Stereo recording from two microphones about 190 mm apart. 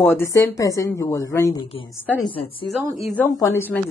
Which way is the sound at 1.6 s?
25° left (ahead or behind).